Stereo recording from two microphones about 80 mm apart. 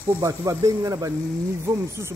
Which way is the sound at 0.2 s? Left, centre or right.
Right.